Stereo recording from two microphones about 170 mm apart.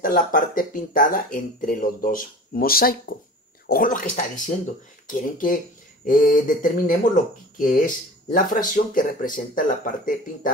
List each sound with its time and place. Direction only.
0.0 s speech: 55° left (ahead or behind)